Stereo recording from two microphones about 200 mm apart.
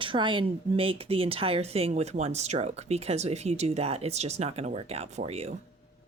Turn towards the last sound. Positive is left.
turn(degrees=-35)  # may be behind; listen again after turning